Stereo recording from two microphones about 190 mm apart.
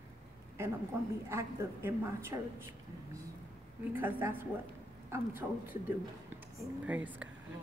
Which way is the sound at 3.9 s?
10° right (ahead or behind).